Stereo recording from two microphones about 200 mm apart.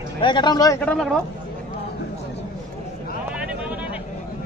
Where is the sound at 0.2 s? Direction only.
20° left (ahead or behind); by 1.2 s 5° left (ahead or behind).